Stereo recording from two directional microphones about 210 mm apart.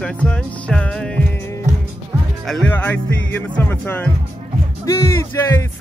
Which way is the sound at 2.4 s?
5° left (ahead or behind).